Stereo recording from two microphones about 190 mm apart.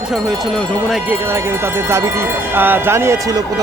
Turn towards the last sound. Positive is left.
turn(degrees=-15)  # may be behind; listen again after turning